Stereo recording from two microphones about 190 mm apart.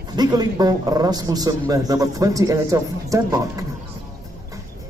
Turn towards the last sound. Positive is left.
turn(degrees=-15)  # may be behind; listen again after turning